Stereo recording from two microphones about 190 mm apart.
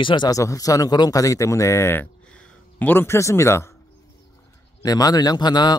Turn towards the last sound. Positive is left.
turn(degrees=20)  # may be behind; listen again after turning